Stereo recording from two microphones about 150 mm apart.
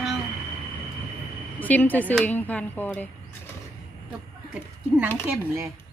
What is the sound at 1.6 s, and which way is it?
Speech, 10° left (ahead or behind).